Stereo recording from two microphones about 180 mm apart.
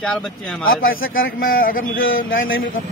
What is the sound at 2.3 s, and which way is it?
Speech, 90° left.